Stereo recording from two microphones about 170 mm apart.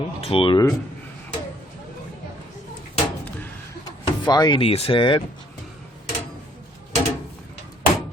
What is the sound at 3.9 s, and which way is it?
Speech, 25° left (ahead or behind).